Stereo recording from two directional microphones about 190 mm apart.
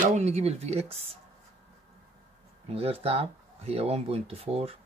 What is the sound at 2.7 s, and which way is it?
Speech, 30° right (ahead or behind).